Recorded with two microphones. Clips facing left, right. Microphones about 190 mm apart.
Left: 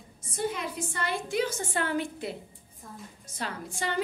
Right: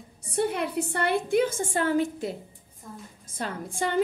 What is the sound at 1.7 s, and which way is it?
A woman's voice, 40° right (ahead or behind).